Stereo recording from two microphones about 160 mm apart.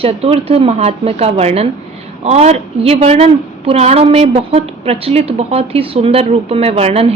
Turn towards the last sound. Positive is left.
turn(degrees=-40)  # may be behind; listen again after turning